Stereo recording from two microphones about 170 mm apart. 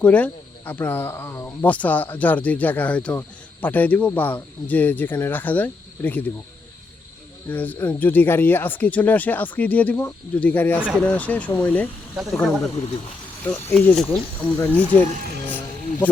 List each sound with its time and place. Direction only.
0.0 s speech: 10° left (ahead or behind)
7.4 s speech: 10° left (ahead or behind)
10.8 s speech: 5° right (ahead or behind)
11.0 s speech: 10° left (ahead or behind)
12.1 s speech: centre (ahead or behind)
12.7 s speech: 35° left (ahead or behind)
13.4 s speech: 10° left (ahead or behind)